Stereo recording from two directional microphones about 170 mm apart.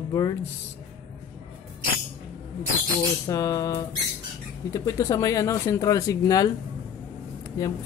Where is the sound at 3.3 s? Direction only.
20° left (ahead or behind).